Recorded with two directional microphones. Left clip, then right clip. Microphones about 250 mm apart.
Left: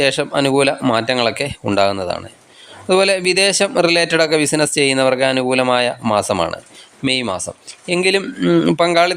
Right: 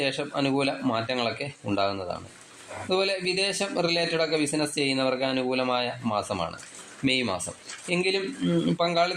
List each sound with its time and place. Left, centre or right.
0.0 s a man's voice: left